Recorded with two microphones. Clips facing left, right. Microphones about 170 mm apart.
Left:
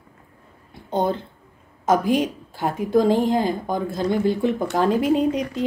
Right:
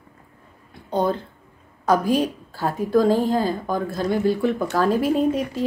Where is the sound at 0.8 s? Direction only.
25° left (ahead or behind).